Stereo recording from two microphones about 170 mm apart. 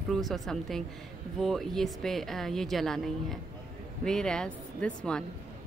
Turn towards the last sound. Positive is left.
turn(degrees=5)  # may be behind; listen again after turning